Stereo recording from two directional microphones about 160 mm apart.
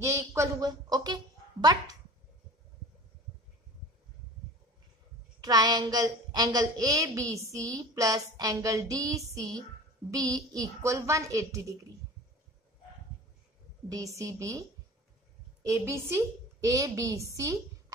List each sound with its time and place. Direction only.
0.0 s a sound: 15° right (ahead or behind)
5.4 s a woman's voice: 25° right (ahead or behind)
13.8 s a woman's voice: 20° right (ahead or behind)
15.6 s a woman's voice: 20° right (ahead or behind)